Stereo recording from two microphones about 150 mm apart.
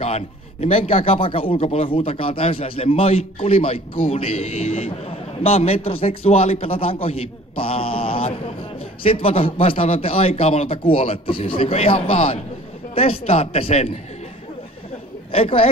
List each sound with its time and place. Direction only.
0.0 s a man's voice: 40° left (ahead or behind)
15.3 s a man's voice: 40° left (ahead or behind)